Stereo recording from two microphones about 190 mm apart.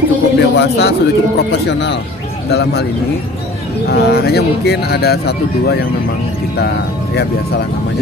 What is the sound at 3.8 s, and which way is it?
Speech, 55° left (ahead or behind).